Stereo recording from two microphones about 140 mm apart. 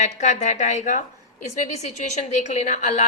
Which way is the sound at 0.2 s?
55° left (ahead or behind).